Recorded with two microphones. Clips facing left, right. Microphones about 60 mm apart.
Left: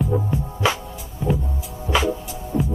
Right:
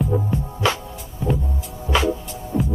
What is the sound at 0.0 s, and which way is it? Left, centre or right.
Music, centre.